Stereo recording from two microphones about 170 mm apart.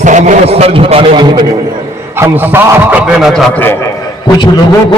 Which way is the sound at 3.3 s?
5° left (ahead or behind).